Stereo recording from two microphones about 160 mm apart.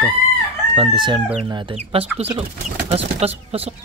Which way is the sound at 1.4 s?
30° right (ahead or behind).